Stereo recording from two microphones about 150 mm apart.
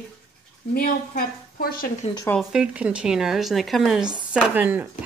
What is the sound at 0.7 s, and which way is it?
A woman's voice, 75° left (ahead or behind).